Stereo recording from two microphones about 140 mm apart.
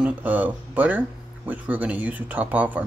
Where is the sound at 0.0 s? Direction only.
10° right (ahead or behind).